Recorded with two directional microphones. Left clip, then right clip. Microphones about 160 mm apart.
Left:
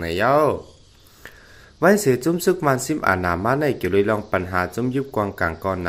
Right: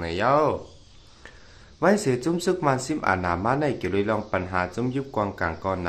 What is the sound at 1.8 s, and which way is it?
Speech, 25° left (ahead or behind).